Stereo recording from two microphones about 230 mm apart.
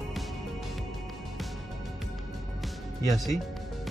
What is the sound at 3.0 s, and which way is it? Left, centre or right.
Speech, centre.